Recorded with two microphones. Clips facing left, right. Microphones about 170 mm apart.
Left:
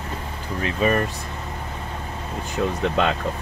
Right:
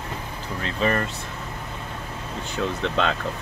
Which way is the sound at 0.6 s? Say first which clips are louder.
Left 3 dB; 15° left (ahead or behind).